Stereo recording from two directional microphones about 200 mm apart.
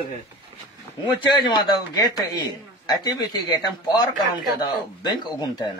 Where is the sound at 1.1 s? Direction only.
20° left (ahead or behind).